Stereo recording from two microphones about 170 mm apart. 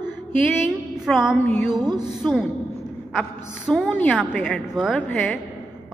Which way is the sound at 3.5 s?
Centre (ahead or behind).